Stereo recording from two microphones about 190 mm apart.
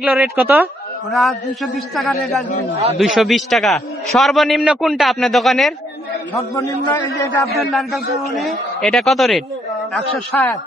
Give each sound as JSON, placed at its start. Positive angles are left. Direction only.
{"t": 0.0, "sound": "a man's voice", "side_deg": 0}
{"t": 6.3, "sound": "a man's voice", "side_deg": 15}
{"t": 7.6, "sound": "a man's voice", "side_deg": 0}